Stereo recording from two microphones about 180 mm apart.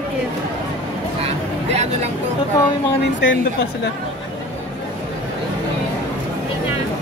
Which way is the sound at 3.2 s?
90° left.